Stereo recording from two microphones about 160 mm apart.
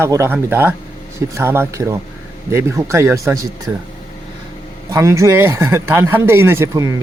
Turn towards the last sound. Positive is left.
turn(degrees=-20)  # may be behind; listen again after turning